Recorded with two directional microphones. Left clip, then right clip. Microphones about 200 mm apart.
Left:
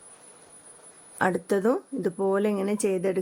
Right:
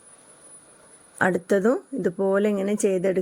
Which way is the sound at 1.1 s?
10° right (ahead or behind).